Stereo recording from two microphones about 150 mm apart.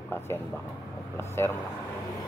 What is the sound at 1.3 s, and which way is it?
Speech, 15° left (ahead or behind).